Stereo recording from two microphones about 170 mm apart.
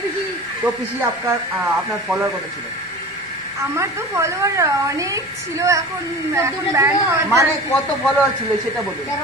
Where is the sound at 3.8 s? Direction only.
15° right (ahead or behind).